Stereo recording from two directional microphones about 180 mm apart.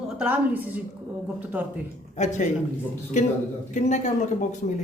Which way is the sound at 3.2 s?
40° left (ahead or behind).